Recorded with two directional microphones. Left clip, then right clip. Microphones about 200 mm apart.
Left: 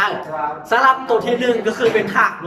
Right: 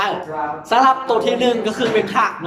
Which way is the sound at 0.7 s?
15° right (ahead or behind).